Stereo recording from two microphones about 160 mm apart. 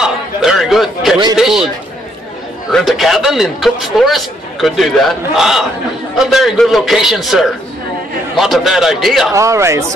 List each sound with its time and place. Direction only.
0.0 s a sound: centre (ahead or behind)
1.3 s speech: 5° right (ahead or behind)
2.7 s speech: centre (ahead or behind)
9.3 s speech: 20° right (ahead or behind)